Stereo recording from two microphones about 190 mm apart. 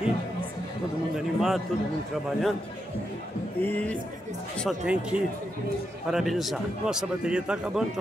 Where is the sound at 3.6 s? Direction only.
10° left (ahead or behind).